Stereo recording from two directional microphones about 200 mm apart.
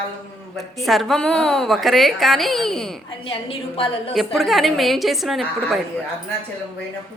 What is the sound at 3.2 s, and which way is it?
Speech, 25° left (ahead or behind).